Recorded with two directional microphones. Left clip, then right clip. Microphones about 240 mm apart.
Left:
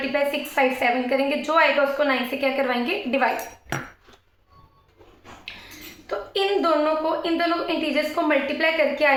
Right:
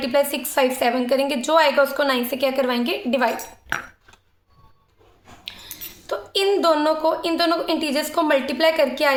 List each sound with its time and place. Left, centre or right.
0.1 s a woman's voice: right
6.1 s a woman's voice: right